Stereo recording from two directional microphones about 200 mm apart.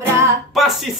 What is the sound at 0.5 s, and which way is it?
Speech, centre (ahead or behind).